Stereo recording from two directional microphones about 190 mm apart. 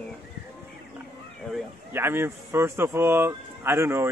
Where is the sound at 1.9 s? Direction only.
10° right (ahead or behind).